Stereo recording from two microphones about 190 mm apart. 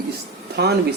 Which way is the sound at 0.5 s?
60° right (ahead or behind).